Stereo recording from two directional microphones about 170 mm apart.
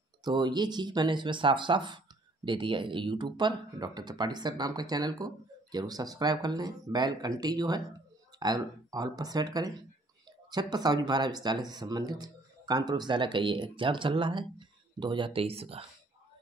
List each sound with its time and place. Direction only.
0.2 s speech: 25° right (ahead or behind)